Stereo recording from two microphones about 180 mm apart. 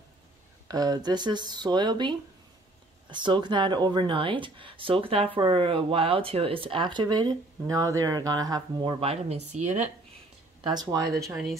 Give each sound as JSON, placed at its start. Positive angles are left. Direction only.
{"t": 0.7, "sound": "speech", "side_deg": -20}
{"t": 9.0, "sound": "speech", "side_deg": -35}
{"t": 10.6, "sound": "speech", "side_deg": -25}